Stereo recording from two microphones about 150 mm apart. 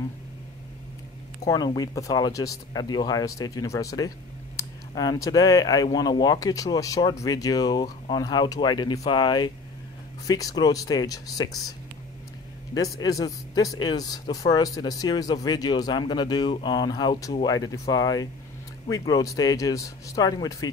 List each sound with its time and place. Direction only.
1.4 s speech: 25° left (ahead or behind)
12.7 s speech: 25° left (ahead or behind)